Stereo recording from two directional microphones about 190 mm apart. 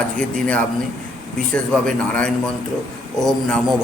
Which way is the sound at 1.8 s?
5° left (ahead or behind).